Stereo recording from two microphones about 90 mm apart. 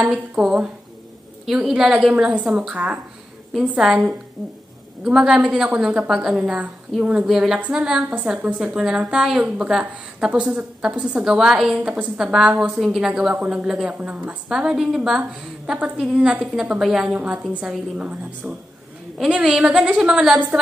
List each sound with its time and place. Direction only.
0.0 s a woman's voice: 10° right (ahead or behind)